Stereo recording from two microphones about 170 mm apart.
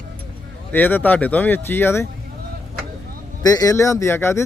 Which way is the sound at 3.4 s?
20° left (ahead or behind).